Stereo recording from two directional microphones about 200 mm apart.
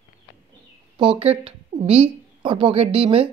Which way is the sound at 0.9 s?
25° right (ahead or behind).